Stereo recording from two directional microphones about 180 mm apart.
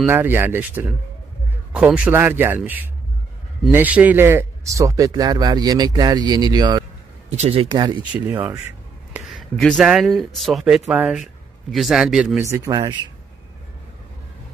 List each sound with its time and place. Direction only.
0.0 s a man's voice: 10° right (ahead or behind)
7.2 s speech: 35° right (ahead or behind)
9.1 s a man's voice: centre (ahead or behind)
12.4 s a man's voice: 15° right (ahead or behind)